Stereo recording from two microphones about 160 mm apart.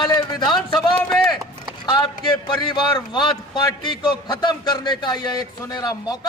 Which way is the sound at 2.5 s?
30° left (ahead or behind).